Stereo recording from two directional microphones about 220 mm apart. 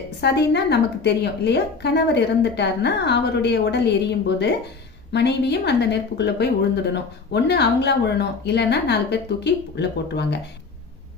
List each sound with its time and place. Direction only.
0.2 s a woman's voice: 50° left (ahead or behind)